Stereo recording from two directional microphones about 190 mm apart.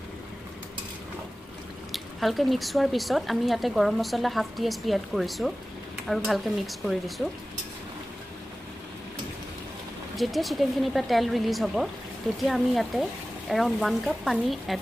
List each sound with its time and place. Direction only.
1.9 s speech: centre (ahead or behind)
10.1 s speech: centre (ahead or behind)